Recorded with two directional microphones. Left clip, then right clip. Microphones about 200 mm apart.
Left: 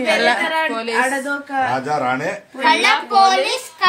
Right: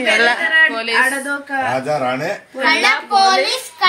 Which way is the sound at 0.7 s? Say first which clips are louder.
Right 3 dB; 50° left (ahead or behind).